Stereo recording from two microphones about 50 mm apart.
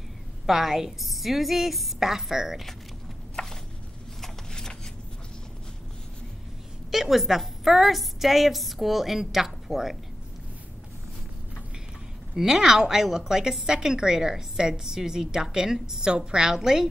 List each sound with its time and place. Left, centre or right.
0.5 s a woman's voice: centre
3.4 s a sound: centre
6.9 s a woman's voice: centre
12.4 s a woman's voice: centre